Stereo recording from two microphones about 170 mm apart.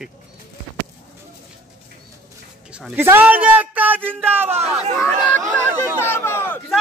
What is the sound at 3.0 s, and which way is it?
A man's voice, 10° right (ahead or behind).